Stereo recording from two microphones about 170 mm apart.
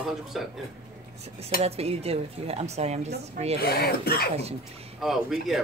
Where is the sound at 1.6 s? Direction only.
35° right (ahead or behind).